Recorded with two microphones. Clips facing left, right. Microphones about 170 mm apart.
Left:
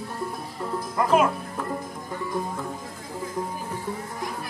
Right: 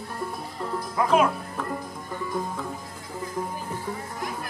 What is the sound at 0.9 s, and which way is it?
Speech, 5° left (ahead or behind).